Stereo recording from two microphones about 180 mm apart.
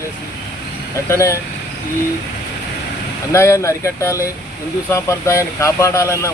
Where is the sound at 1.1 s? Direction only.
15° left (ahead or behind).